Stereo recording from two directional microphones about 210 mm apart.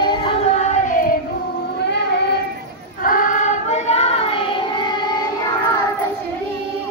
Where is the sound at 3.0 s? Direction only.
40° left (ahead or behind).